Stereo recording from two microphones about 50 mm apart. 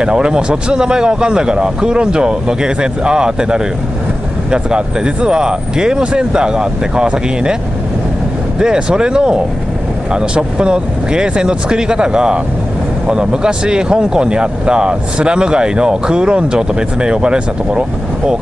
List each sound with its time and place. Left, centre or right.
0.0 s speech: centre
8.5 s speech: centre